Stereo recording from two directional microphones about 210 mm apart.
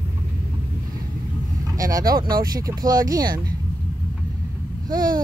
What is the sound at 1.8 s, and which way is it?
Speech, 15° right (ahead or behind).